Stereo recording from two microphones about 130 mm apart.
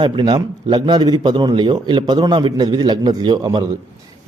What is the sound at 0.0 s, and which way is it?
A man's voice, 35° right (ahead or behind).